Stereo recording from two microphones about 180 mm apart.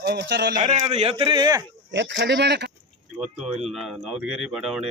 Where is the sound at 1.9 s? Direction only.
75° right (ahead or behind).